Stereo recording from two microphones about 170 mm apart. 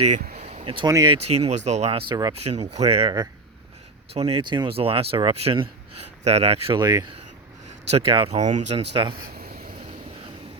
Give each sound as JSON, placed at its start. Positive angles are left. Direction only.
{"t": 0.3, "sound": "speech", "side_deg": -35}
{"t": 1.1, "sound": "speech", "side_deg": -35}
{"t": 2.4, "sound": "speech", "side_deg": -40}
{"t": 7.9, "sound": "speech", "side_deg": -35}
{"t": 9.1, "sound": "a sound", "side_deg": -60}